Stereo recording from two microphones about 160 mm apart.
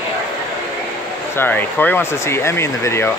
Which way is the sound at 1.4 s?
10° left (ahead or behind).